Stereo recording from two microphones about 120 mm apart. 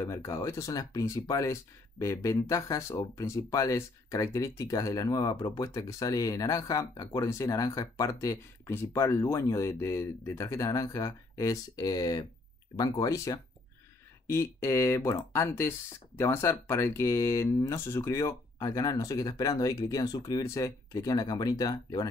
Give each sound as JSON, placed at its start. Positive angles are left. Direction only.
{"t": 0.0, "sound": "speech", "side_deg": 25}